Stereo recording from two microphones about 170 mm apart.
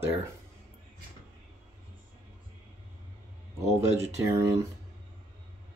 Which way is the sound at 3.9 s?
20° right (ahead or behind).